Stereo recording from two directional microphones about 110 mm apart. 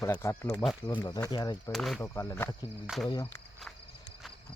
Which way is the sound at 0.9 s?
40° left (ahead or behind).